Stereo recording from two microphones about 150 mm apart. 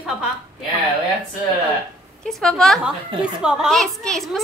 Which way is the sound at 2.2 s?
Centre (ahead or behind).